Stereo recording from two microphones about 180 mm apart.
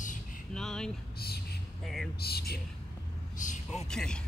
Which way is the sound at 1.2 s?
60° left (ahead or behind).